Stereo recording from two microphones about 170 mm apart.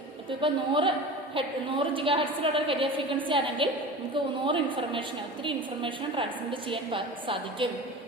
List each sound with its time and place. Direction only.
0.4 s a woman's voice: 30° right (ahead or behind)